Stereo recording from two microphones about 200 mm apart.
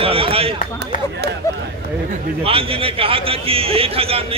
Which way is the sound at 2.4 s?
30° right (ahead or behind).